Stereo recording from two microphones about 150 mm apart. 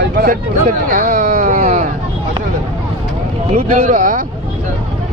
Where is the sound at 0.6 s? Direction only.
60° right (ahead or behind).